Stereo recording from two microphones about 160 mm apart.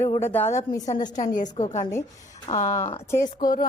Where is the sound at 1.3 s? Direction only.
50° left (ahead or behind).